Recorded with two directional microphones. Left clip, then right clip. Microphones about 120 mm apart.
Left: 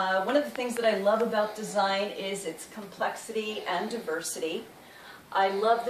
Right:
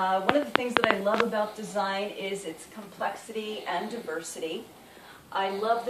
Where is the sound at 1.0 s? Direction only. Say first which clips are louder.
Left 1 dB; 15° left (ahead or behind).